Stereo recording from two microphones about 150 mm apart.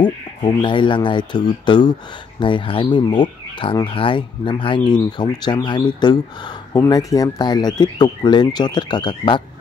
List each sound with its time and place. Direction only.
0.0 s speech: 30° left (ahead or behind)